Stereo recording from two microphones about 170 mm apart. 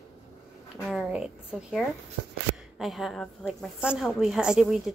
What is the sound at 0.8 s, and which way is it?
A woman's voice, centre (ahead or behind).